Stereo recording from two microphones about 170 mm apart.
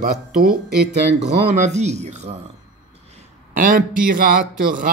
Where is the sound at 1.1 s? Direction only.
40° right (ahead or behind).